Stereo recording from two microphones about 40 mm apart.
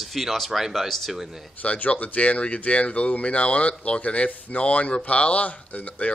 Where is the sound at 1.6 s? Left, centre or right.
Left.